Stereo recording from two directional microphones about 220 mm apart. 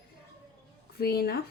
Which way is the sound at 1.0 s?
45° left (ahead or behind).